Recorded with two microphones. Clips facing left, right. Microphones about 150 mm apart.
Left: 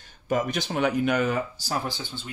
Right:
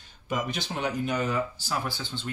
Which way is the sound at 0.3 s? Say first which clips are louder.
Left 5 dB; 45° left (ahead or behind).